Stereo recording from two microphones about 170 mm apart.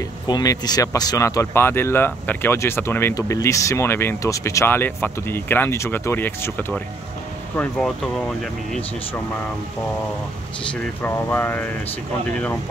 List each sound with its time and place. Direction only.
0.3 s speech: 20° left (ahead or behind)
10.7 s speech: 10° left (ahead or behind)